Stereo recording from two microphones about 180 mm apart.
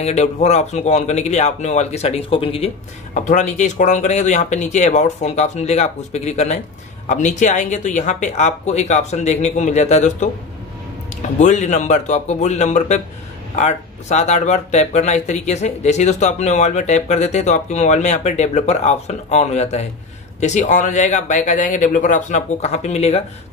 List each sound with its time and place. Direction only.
0.0 s speech: 40° left (ahead or behind)
11.3 s speech: 40° left (ahead or behind)